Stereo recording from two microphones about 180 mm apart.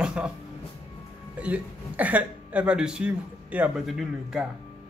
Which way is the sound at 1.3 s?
5° right (ahead or behind).